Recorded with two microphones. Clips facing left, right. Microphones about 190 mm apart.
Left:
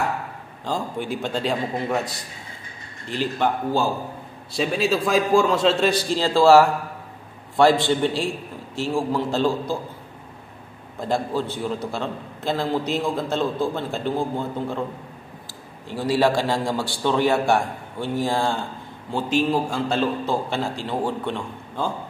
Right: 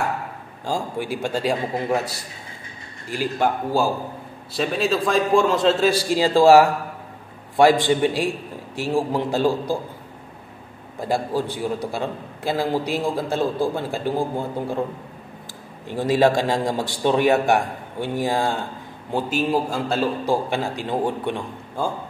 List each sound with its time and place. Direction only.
0.7 s a man's voice: 10° right (ahead or behind)
4.6 s a man's voice: centre (ahead or behind)
11.3 s a man's voice: 10° right (ahead or behind)
15.9 s a man's voice: 20° right (ahead or behind)